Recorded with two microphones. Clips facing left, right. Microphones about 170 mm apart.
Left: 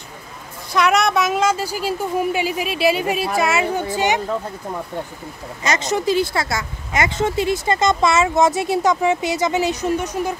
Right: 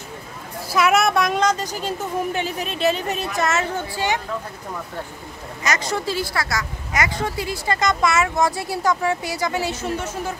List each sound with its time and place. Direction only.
0.7 s a woman's voice: 5° right (ahead or behind); by 4.2 s 20° left (ahead or behind)
5.6 s speech: 25° left (ahead or behind)